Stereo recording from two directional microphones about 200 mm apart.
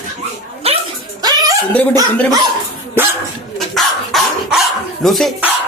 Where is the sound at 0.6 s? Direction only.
30° right (ahead or behind).